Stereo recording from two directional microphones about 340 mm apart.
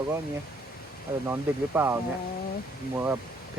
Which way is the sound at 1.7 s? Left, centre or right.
Centre.